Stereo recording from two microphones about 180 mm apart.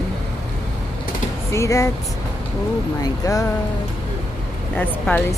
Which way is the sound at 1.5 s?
15° left (ahead or behind).